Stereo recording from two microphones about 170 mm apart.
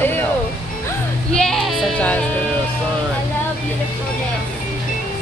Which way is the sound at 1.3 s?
5° left (ahead or behind).